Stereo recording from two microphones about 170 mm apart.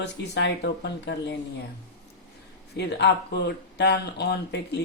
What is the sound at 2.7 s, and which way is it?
Speech, 80° left.